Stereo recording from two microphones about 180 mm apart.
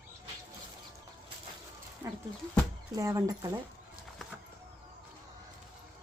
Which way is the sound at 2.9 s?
20° right (ahead or behind).